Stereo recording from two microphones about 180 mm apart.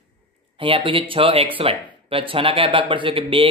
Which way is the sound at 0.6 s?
30° right (ahead or behind).